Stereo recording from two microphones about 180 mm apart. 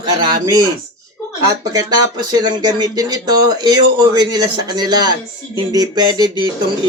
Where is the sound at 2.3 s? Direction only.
20° right (ahead or behind).